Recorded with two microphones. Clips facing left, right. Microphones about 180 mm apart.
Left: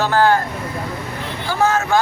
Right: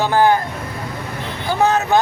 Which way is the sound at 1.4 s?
20° right (ahead or behind).